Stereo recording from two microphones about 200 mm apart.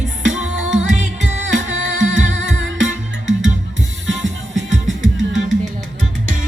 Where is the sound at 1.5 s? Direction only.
70° right (ahead or behind).